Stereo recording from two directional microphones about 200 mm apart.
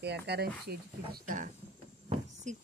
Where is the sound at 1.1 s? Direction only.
40° right (ahead or behind).